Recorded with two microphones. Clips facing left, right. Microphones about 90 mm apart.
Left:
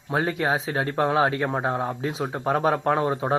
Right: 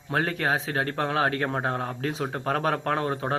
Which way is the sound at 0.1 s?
15° left (ahead or behind).